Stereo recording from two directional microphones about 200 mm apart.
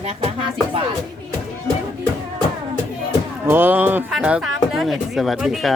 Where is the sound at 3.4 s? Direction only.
10° right (ahead or behind).